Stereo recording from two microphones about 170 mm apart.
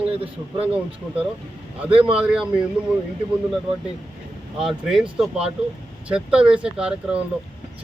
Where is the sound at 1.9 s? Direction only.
30° right (ahead or behind).